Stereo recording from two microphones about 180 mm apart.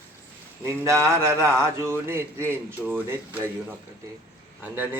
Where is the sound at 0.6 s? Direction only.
15° right (ahead or behind).